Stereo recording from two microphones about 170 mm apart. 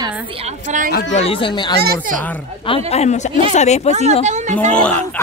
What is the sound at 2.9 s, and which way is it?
Speech, 40° left (ahead or behind).